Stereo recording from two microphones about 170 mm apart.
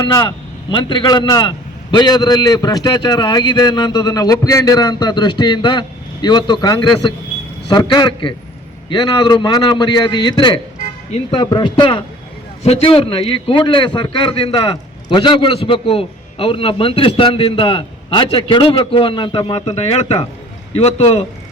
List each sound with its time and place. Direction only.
0.0 s a man's voice: 25° left (ahead or behind)